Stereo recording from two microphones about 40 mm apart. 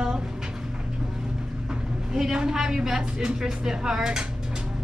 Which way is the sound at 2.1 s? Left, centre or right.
Centre.